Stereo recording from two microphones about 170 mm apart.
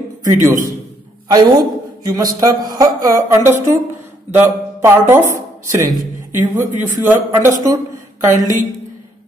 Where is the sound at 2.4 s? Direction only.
20° right (ahead or behind).